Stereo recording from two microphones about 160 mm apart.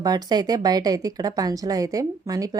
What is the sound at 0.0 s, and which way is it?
Speech, 25° right (ahead or behind).